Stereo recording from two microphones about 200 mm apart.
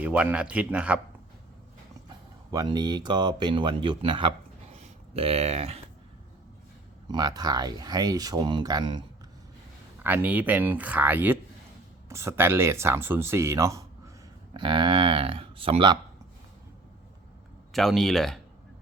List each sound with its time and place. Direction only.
0.0 s speech: 5° right (ahead or behind)
2.5 s speech: 20° right (ahead or behind)
7.1 s speech: 20° right (ahead or behind)
10.0 s speech: 10° right (ahead or behind)
17.7 s speech: centre (ahead or behind)